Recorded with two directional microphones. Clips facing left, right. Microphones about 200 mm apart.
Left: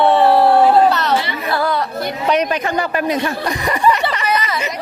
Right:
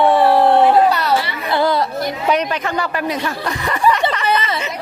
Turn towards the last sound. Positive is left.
turn(degrees=15)  # may be behind; listen again after turning